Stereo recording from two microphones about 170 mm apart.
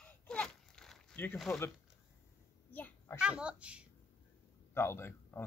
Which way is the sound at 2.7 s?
10° left (ahead or behind).